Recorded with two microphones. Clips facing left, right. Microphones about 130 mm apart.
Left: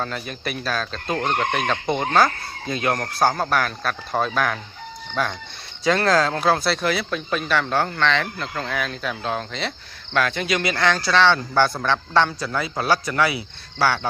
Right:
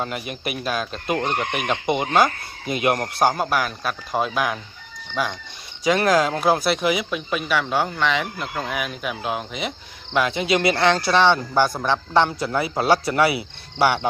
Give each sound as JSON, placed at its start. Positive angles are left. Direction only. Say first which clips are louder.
{"t": 0.0, "sound": "speech", "louder": "right 1 dB", "side_deg": -15}